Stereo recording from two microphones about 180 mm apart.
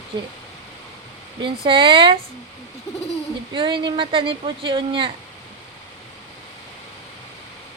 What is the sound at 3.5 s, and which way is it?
Speech, 25° right (ahead or behind).